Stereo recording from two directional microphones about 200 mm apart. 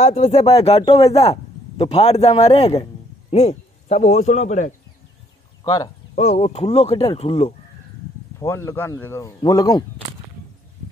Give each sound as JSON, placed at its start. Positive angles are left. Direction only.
{"t": 0.0, "sound": "a man's voice", "side_deg": 30}
{"t": 5.6, "sound": "speech", "side_deg": 20}
{"t": 6.1, "sound": "speech", "side_deg": 30}
{"t": 8.4, "sound": "speech", "side_deg": 10}